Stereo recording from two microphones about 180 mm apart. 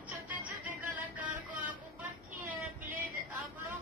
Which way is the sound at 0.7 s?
10° right (ahead or behind).